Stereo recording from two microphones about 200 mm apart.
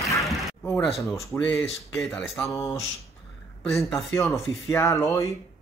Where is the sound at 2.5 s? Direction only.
15° left (ahead or behind).